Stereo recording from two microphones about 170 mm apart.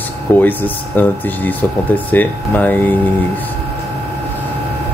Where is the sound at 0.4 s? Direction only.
10° left (ahead or behind).